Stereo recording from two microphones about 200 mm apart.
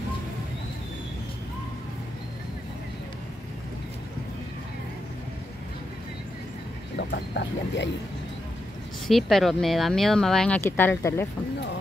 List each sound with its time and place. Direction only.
7.0 s speech: 60° left (ahead or behind)
9.0 s speech: centre (ahead or behind)